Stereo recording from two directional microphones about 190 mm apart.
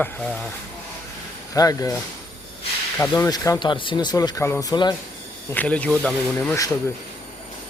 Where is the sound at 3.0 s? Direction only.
15° left (ahead or behind).